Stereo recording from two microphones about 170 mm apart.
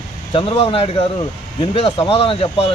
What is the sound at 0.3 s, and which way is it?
Speech, 30° left (ahead or behind).